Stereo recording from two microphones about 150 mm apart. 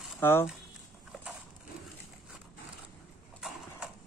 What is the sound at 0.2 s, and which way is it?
Speech, 15° left (ahead or behind).